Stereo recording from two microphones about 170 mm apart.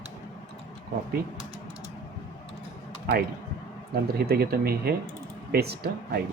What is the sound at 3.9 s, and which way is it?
Speech, 65° right (ahead or behind).